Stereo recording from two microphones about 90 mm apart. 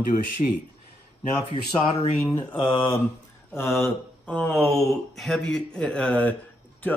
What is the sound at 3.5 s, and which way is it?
Speech, 30° left (ahead or behind).